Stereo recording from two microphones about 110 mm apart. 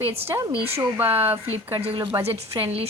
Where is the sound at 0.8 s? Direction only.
20° right (ahead or behind).